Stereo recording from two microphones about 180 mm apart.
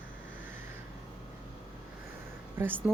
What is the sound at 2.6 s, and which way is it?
Speech, 10° right (ahead or behind).